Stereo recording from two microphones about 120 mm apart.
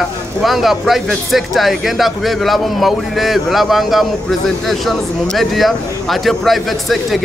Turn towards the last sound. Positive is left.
turn(degrees=0)  # may be behind; listen again after turning